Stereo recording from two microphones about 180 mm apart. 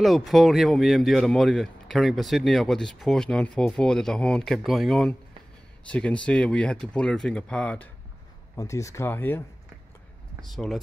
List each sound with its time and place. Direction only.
0.0 s speech: centre (ahead or behind)
10.5 s speech: centre (ahead or behind)